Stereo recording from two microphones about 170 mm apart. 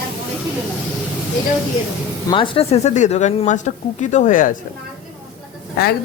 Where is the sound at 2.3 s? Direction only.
30° left (ahead or behind); by 4.6 s 50° left (ahead or behind).